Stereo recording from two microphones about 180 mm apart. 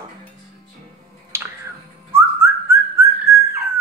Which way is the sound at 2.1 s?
15° right (ahead or behind).